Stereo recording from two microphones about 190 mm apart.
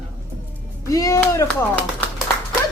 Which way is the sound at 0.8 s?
15° left (ahead or behind).